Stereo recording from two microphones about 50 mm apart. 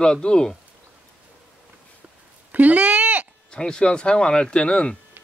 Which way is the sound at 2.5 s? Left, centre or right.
Right.